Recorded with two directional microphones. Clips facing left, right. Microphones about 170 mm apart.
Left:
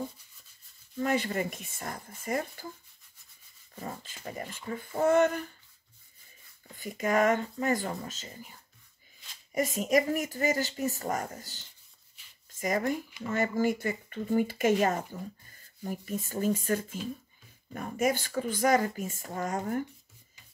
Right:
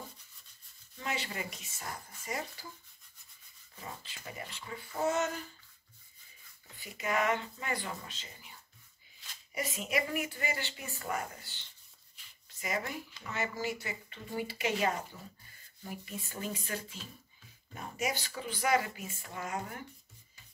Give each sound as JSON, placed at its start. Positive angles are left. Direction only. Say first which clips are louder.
{"t": 0.9, "sound": "speech", "louder": "left 10 dB", "side_deg": 50}
{"t": 3.7, "sound": "speech", "louder": "left 6 dB", "side_deg": 45}
{"t": 6.7, "sound": "speech", "louder": "left 6 dB", "side_deg": 45}